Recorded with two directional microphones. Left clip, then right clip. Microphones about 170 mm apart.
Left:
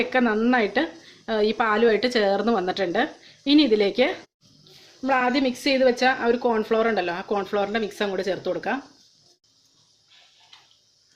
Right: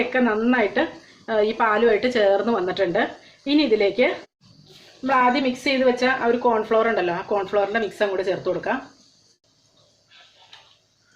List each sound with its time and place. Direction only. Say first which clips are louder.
0.0 s speech: right 1 dB; 55° left (ahead or behind)